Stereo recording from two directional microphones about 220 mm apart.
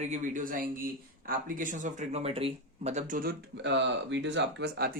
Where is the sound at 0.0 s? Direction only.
35° right (ahead or behind).